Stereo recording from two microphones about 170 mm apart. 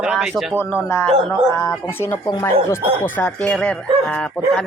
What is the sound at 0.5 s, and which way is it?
A man's voice, 10° left (ahead or behind).